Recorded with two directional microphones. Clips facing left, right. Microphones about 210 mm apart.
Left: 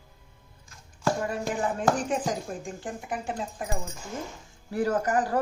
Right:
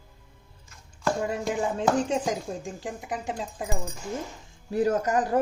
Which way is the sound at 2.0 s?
25° right (ahead or behind).